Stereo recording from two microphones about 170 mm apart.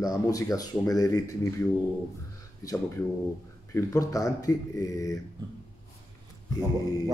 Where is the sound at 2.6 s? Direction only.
20° left (ahead or behind).